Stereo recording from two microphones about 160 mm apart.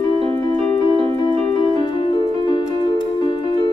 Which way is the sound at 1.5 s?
30° left (ahead or behind).